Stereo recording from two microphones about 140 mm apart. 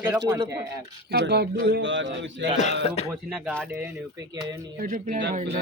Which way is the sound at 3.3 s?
Centre (ahead or behind).